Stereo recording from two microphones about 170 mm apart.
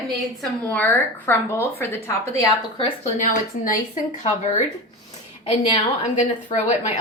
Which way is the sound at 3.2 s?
45° left (ahead or behind).